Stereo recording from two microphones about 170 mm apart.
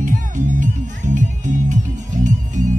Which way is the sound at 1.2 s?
45° right (ahead or behind).